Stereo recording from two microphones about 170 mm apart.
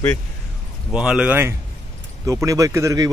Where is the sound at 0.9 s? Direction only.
5° right (ahead or behind).